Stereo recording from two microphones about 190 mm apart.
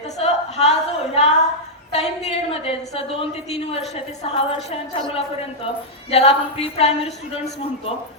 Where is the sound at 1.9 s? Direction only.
35° left (ahead or behind).